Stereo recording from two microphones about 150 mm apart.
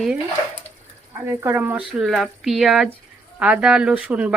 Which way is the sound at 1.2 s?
15° right (ahead or behind).